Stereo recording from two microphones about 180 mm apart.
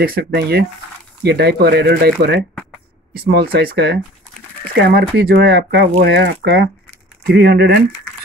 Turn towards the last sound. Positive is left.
turn(degrees=-70)  # may be behind; listen again after turning